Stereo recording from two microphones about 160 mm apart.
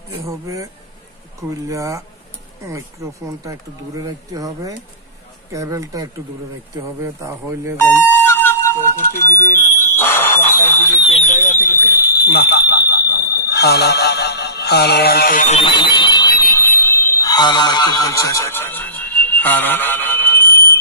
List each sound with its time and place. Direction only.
0.3 s speech: 20° right (ahead or behind)
1.7 s speech: 20° right (ahead or behind)
7.7 s speech: 15° left (ahead or behind)
8.1 s music: 15° left (ahead or behind)
9.6 s fire alarm: 15° left (ahead or behind)
11.0 s speech: 40° left (ahead or behind); by 15.4 s 70° left (ahead or behind)
15.6 s alarm: 30° left (ahead or behind)